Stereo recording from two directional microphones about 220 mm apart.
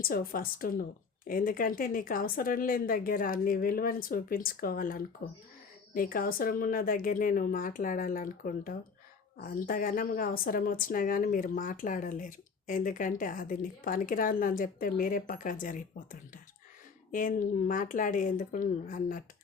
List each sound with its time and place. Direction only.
0.0 s a woman's voice: 40° left (ahead or behind)
17.1 s a woman's voice: 35° left (ahead or behind)